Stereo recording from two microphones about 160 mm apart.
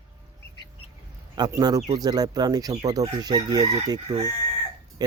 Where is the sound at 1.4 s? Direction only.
25° right (ahead or behind).